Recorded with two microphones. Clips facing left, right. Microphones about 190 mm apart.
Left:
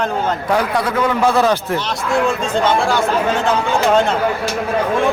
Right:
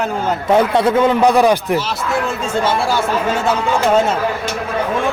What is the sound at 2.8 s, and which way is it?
Speech, 10° right (ahead or behind).